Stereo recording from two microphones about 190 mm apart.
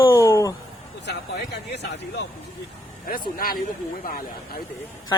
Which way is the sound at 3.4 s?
50° left (ahead or behind).